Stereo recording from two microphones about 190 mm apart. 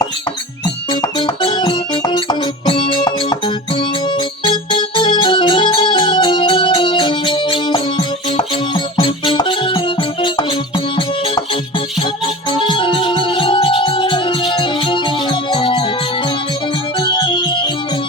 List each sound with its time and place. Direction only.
1.4 s music: 25° left (ahead or behind)
12.5 s music: 25° left (ahead or behind)
17.0 s music: 25° left (ahead or behind)